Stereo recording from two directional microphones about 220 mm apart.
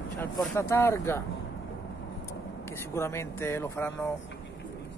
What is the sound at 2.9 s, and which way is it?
Speech, 10° left (ahead or behind).